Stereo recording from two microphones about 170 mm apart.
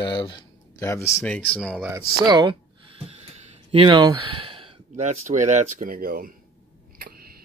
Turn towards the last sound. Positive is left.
turn(degrees=-55)  # may be behind; listen again after turning